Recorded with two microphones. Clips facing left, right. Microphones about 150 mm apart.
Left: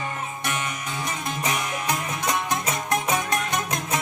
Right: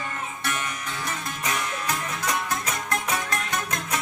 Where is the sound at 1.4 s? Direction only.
20° left (ahead or behind).